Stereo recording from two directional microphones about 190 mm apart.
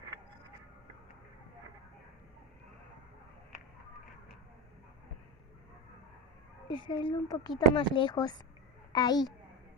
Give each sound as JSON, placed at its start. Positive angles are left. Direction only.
{"t": 6.7, "sound": "speech", "side_deg": 25}